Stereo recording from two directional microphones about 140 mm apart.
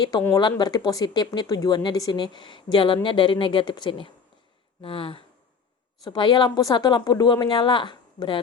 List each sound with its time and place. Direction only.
0.0 s speech: 25° left (ahead or behind)